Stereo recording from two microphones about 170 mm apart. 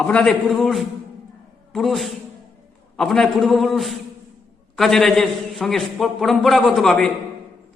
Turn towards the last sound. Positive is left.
turn(degrees=5)  # may be behind; listen again after turning